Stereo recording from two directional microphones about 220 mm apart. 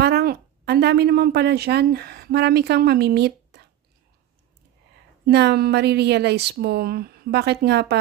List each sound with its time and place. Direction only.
0.0 s a woman's voice: 45° right (ahead or behind)
5.2 s speech: 50° right (ahead or behind)